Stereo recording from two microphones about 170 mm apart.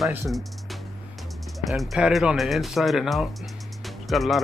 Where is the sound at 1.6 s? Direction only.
Centre (ahead or behind).